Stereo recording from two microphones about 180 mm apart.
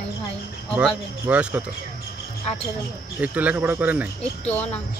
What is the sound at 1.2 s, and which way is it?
Speech, 10° right (ahead or behind).